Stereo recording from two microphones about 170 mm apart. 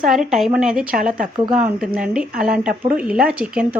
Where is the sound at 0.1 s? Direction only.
Centre (ahead or behind).